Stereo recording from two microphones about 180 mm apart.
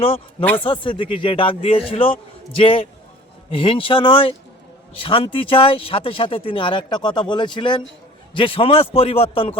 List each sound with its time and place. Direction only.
0.0 s a man's voice: 30° left (ahead or behind)